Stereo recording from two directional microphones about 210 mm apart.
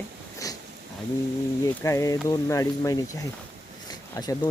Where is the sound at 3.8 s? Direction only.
20° left (ahead or behind).